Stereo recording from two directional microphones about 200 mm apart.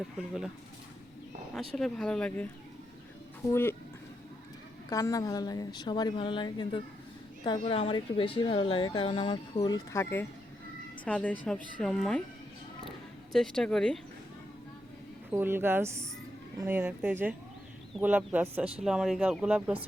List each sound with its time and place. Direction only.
1.5 s speech: centre (ahead or behind)
3.5 s speech: 10° left (ahead or behind)
4.9 s speech: 15° left (ahead or behind)
13.3 s speech: centre (ahead or behind)
15.3 s speech: 10° right (ahead or behind)